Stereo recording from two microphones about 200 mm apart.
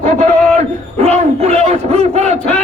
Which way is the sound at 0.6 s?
35° right (ahead or behind).